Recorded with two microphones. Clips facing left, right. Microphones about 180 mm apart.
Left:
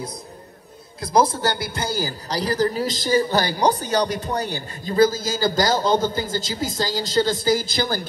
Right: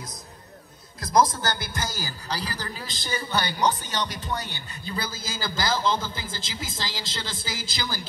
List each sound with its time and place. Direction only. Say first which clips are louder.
1.0 s a man's voice: left 3 dB; 30° left (ahead or behind)
7.7 s a woman's voice: left 9 dB; 55° left (ahead or behind)